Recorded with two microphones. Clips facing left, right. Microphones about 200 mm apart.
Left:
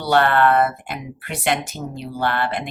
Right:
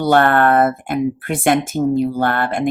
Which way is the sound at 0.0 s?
50° right (ahead or behind).